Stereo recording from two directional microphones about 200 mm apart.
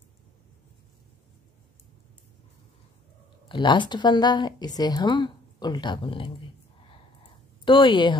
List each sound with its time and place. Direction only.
3.4 s a woman's voice: 25° left (ahead or behind)
7.6 s a woman's voice: 25° left (ahead or behind)